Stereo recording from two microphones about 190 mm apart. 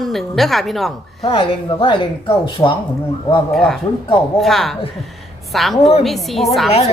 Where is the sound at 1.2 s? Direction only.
30° left (ahead or behind).